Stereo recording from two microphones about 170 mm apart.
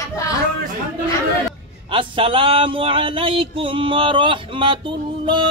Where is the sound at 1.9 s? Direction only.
30° right (ahead or behind).